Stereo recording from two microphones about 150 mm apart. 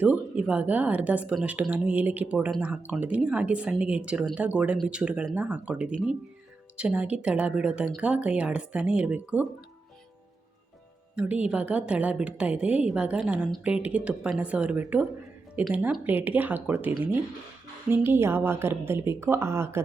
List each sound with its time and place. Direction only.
0.0 s a woman's voice: 10° right (ahead or behind)
11.1 s a woman's voice: 5° right (ahead or behind)
17.9 s a woman's voice: 15° right (ahead or behind)